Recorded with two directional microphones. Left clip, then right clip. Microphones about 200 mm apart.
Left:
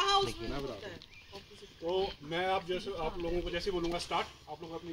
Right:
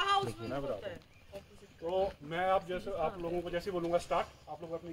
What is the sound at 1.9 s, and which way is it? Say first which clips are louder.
Speech: even; 5° right (ahead or behind).